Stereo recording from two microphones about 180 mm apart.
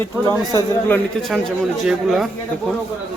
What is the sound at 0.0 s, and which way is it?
Speech, 15° left (ahead or behind).